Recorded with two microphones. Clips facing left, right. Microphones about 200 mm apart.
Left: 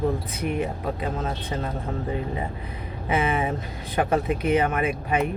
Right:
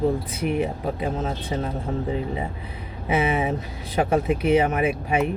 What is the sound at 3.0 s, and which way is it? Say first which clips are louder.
Speech: right 2 dB; 15° right (ahead or behind).